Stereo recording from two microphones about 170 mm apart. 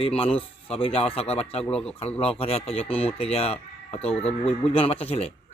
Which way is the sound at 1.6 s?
5° left (ahead or behind).